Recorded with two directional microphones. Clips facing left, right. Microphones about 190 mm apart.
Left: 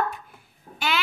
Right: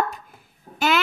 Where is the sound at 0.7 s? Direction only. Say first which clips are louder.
Right 6 dB; 45° right (ahead or behind).